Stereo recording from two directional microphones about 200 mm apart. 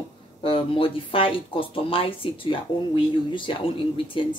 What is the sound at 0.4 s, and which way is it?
Speech, 25° left (ahead or behind).